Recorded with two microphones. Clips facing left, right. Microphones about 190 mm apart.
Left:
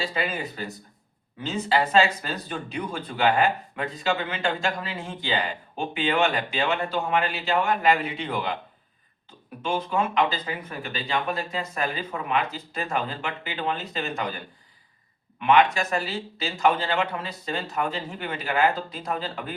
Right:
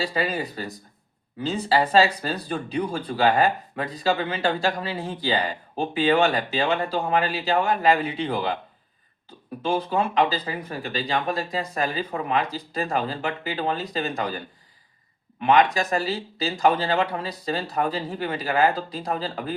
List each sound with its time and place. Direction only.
0.0 s speech: 35° right (ahead or behind)
9.6 s speech: 35° right (ahead or behind)